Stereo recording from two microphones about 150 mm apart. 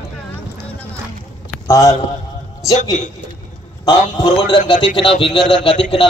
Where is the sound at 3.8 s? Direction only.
30° left (ahead or behind).